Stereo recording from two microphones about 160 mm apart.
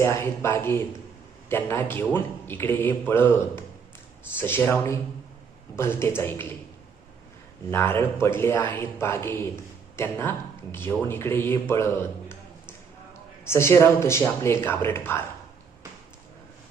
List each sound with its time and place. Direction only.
0.0 s a man's voice: 15° left (ahead or behind)
7.7 s a man's voice: 15° left (ahead or behind)
13.4 s a man's voice: 15° left (ahead or behind)